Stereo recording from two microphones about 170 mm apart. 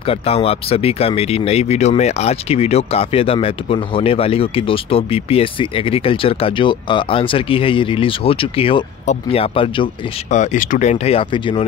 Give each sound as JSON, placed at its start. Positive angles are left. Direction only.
{"t": 0.0, "sound": "speech", "side_deg": 35}
{"t": 10.3, "sound": "speech", "side_deg": 45}